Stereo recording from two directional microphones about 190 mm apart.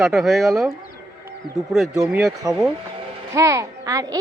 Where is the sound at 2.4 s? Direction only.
15° right (ahead or behind).